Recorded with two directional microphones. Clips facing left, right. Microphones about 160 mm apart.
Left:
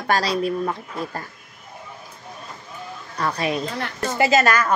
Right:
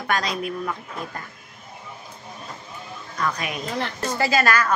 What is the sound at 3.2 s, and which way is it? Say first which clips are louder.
Speech: left 4 dB; 30° left (ahead or behind).